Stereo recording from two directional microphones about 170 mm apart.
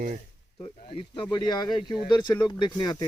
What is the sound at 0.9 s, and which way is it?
Speech, 30° left (ahead or behind).